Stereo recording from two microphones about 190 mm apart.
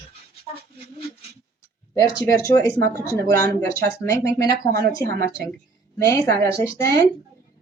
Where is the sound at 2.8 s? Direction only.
60° right (ahead or behind).